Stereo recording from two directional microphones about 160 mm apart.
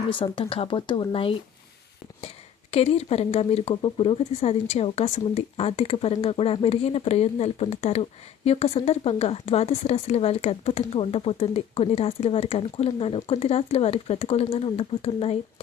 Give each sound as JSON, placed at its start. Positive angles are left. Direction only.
{"t": 0.1, "sound": "speech", "side_deg": 30}
{"t": 2.7, "sound": "speech", "side_deg": 40}